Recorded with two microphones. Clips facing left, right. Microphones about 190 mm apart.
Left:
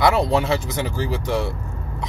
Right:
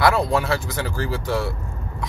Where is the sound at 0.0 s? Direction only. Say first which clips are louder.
Left 1 dB; 20° left (ahead or behind).